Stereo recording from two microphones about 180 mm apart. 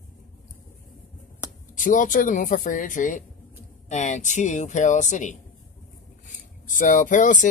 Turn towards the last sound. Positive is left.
turn(degrees=45)  # may be behind; listen again after turning